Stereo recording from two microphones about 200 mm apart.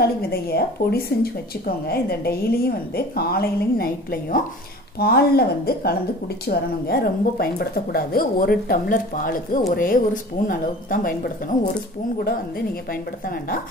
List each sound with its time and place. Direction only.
0.0 s speech: 50° left (ahead or behind)